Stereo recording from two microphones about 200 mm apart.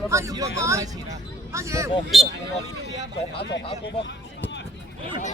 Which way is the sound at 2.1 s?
Centre (ahead or behind).